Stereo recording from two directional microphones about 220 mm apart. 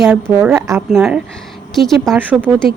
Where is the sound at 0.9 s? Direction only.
Centre (ahead or behind).